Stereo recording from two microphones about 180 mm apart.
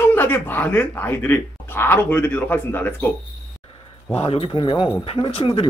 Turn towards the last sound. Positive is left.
turn(degrees=30)  # may be behind; listen again after turning